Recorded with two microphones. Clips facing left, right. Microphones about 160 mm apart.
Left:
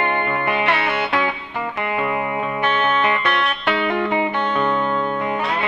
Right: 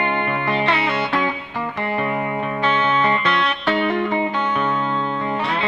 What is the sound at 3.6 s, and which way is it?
Music, 15° left (ahead or behind).